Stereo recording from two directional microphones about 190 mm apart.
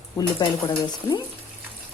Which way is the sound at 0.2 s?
20° left (ahead or behind).